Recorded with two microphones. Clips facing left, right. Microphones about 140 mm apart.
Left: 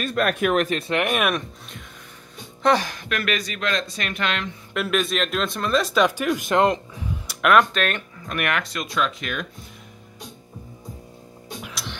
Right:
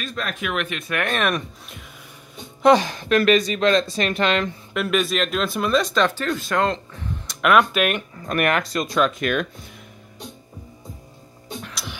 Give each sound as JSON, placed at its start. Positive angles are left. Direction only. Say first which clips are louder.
{"t": 0.0, "sound": "speech", "louder": "left 7 dB", "side_deg": 60}
{"t": 0.5, "sound": "speech", "louder": "left 5 dB", "side_deg": 40}
{"t": 1.1, "sound": "speech", "louder": "right 4 dB", "side_deg": 5}
{"t": 2.6, "sound": "speech", "louder": "right 5 dB", "side_deg": -20}
{"t": 4.7, "sound": "speech", "louder": "right 1 dB", "side_deg": 0}
{"t": 7.0, "sound": "music", "louder": "even", "side_deg": 10}
{"t": 8.3, "sound": "speech", "louder": "right 5 dB", "side_deg": -40}
{"t": 11.6, "sound": "music", "louder": "even", "side_deg": 0}